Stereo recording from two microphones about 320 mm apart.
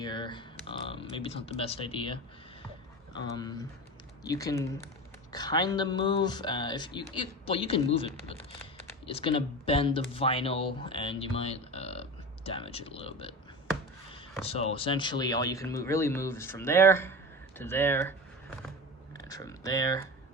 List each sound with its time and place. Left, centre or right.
0.0 s speech: centre
19.1 s speech: centre